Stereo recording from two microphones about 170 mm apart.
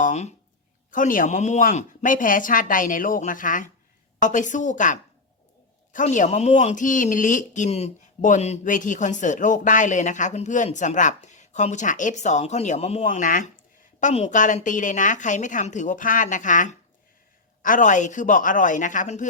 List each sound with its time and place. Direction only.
0.0 s speech: 45° left (ahead or behind)